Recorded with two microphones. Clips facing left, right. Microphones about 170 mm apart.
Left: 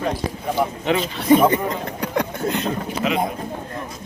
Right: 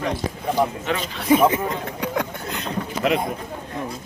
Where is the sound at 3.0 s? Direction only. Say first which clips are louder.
Right 2 dB; 60° right (ahead or behind).